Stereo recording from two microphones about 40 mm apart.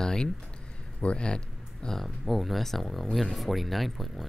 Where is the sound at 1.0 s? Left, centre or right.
Left.